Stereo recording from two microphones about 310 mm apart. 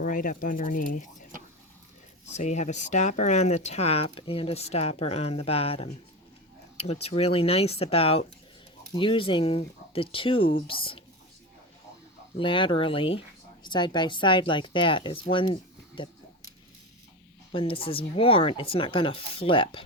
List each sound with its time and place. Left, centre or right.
0.0 s speech: left
12.4 s speech: centre
17.5 s speech: centre